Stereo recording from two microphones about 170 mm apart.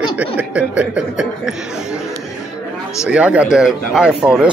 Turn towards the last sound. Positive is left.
turn(degrees=-5)  # may be behind; listen again after turning